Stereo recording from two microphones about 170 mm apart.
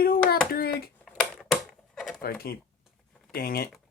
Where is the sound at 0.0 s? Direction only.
60° left (ahead or behind).